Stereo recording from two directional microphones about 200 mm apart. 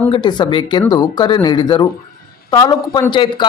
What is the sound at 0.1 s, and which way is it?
Speech, 20° left (ahead or behind).